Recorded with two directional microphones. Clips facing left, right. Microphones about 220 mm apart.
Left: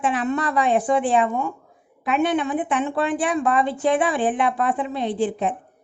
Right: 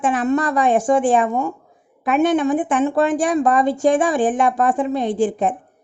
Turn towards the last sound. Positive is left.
turn(degrees=-45)  # may be behind; listen again after turning